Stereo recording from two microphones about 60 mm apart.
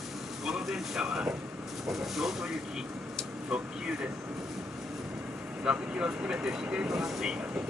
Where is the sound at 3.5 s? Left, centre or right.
Centre.